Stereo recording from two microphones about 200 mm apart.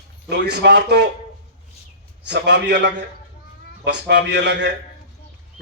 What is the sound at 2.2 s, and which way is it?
Speech, 60° right (ahead or behind).